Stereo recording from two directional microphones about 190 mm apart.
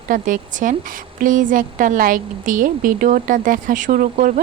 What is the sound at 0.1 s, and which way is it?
A woman's voice, 45° right (ahead or behind).